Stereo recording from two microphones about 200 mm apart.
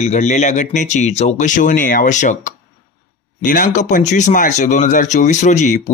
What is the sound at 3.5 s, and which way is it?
Speech, 40° left (ahead or behind).